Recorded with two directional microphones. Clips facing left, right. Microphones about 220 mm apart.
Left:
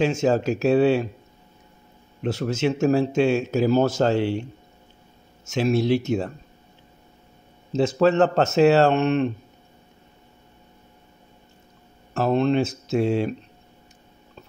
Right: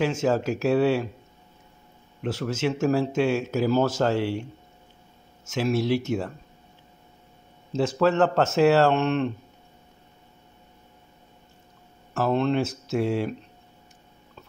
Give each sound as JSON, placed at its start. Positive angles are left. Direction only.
{"t": 0.0, "sound": "speech", "side_deg": 25}
{"t": 2.2, "sound": "speech", "side_deg": 25}
{"t": 5.5, "sound": "speech", "side_deg": 25}
{"t": 7.7, "sound": "speech", "side_deg": 20}
{"t": 12.1, "sound": "speech", "side_deg": 20}